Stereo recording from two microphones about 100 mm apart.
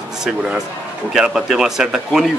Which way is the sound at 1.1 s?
5° right (ahead or behind).